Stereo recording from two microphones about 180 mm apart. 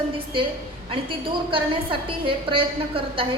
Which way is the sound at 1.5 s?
30° right (ahead or behind).